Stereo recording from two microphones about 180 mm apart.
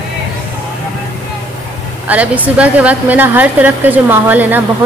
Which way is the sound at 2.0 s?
10° right (ahead or behind).